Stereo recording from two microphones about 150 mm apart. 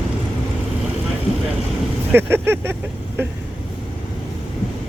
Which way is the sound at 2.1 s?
15° right (ahead or behind).